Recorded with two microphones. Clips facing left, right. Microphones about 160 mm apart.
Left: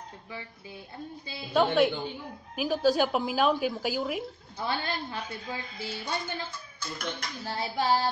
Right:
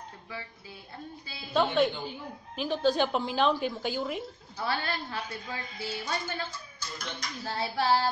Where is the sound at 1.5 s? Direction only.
5° left (ahead or behind).